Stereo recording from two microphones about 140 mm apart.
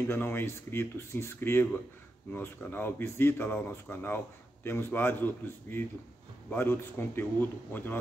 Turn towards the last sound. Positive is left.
turn(degrees=15)  # may be behind; listen again after turning